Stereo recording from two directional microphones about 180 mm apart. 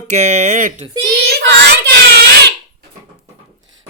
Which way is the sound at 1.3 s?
70° right (ahead or behind).